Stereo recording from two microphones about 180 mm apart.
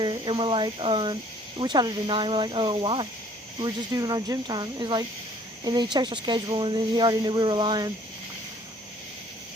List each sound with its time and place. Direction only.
0.0 s speech: 25° right (ahead or behind)